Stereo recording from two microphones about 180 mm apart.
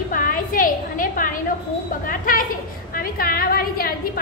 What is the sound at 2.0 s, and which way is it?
A woman's voice, 50° left (ahead or behind).